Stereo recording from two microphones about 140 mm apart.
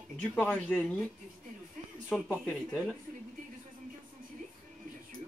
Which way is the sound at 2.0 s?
Centre (ahead or behind).